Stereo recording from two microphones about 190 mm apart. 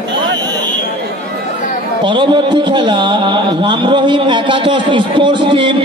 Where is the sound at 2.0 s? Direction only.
25° right (ahead or behind).